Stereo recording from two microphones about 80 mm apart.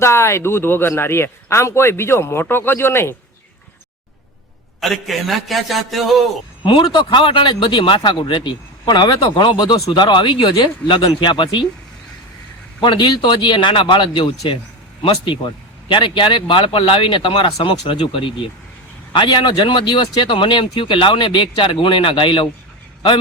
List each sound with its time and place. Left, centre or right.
0.0 s speech: left
4.8 s a man's voice: centre
6.7 s speech: left
9.2 s speech: left
12.8 s speech: left